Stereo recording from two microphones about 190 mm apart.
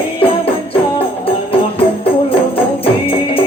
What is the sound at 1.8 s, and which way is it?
Music, 30° left (ahead or behind).